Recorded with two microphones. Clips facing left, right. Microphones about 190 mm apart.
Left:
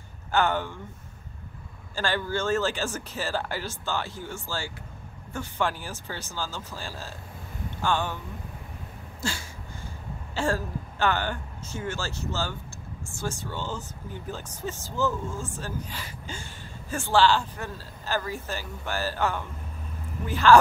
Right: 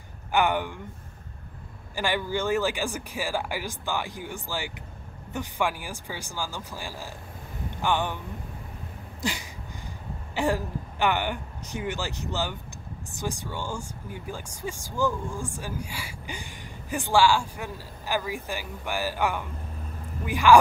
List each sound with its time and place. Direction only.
0.3 s speech: 15° right (ahead or behind)
2.0 s speech: 15° right (ahead or behind)
9.2 s a sound: 15° right (ahead or behind)
10.3 s speech: 15° right (ahead or behind)